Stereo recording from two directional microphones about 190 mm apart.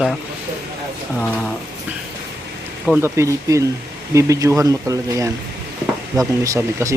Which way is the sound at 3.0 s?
15° right (ahead or behind).